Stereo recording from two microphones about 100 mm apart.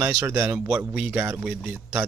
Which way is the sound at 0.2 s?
20° right (ahead or behind).